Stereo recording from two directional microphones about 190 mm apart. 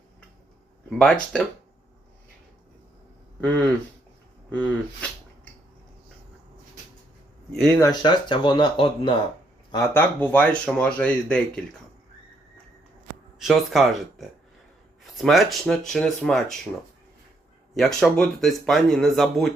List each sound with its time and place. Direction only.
0.9 s speech: 5° left (ahead or behind)
4.5 s speech: 10° left (ahead or behind)
7.8 s speech: 20° left (ahead or behind)
9.7 s speech: 15° left (ahead or behind)
13.4 s speech: centre (ahead or behind)
17.7 s speech: centre (ahead or behind)